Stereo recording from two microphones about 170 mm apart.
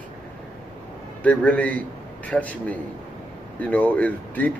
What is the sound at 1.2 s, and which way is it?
A man's voice, 10° left (ahead or behind).